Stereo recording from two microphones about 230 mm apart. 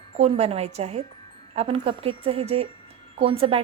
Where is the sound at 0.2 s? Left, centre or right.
Right.